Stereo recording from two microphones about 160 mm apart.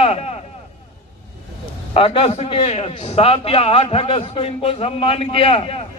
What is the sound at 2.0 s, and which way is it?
A man's voice, 35° left (ahead or behind).